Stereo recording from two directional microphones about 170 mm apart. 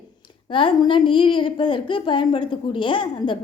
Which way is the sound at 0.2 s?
30° left (ahead or behind).